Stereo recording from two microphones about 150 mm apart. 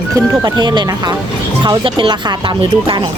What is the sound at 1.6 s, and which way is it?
Speech, 30° right (ahead or behind).